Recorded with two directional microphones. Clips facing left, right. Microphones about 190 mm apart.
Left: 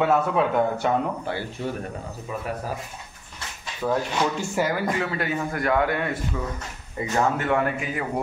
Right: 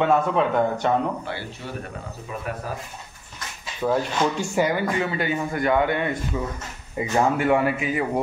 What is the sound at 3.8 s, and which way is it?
A man's voice, 5° right (ahead or behind).